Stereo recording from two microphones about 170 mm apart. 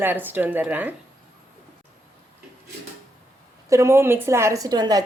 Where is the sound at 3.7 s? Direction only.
15° right (ahead or behind).